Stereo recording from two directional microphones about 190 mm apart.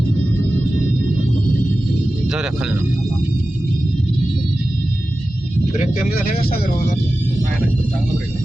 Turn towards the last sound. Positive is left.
turn(degrees=50)  # may be behind; listen again after turning